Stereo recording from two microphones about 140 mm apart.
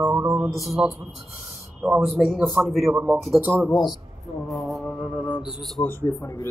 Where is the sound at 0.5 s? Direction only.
Centre (ahead or behind).